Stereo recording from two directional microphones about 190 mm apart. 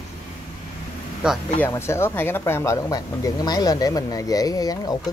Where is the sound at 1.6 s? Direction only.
15° left (ahead or behind).